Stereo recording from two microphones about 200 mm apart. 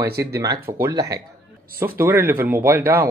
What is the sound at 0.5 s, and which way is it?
Speech, 50° right (ahead or behind).